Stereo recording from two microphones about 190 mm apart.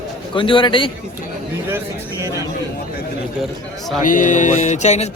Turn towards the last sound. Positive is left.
turn(degrees=35)  # may be behind; listen again after turning